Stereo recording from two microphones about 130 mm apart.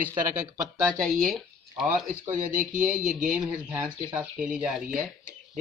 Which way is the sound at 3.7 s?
15° right (ahead or behind).